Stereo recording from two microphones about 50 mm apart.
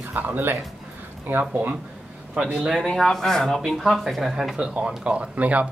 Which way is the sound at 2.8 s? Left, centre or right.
Centre.